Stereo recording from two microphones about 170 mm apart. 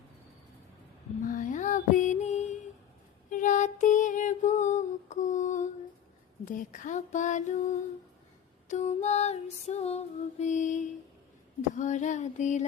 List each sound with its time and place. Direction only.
1.2 s music: 50° left (ahead or behind)
3.2 s a sound: 50° left (ahead or behind)
6.4 s female singing: 50° left (ahead or behind)